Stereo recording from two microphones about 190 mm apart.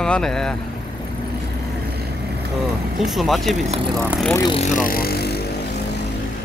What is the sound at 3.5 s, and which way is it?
Speech, 35° right (ahead or behind).